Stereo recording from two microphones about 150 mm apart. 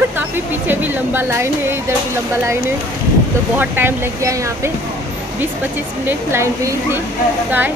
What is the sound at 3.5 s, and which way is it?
Speech, 15° right (ahead or behind).